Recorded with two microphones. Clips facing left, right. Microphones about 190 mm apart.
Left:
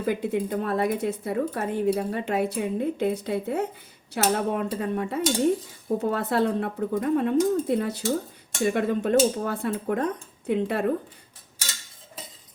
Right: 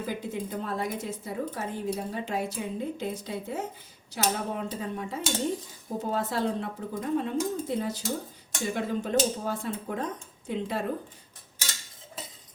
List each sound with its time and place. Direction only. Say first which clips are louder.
0.0 s speech: left 7 dB; 65° left (ahead or behind)